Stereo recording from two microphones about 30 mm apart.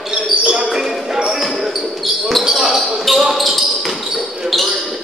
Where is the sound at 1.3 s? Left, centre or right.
Centre.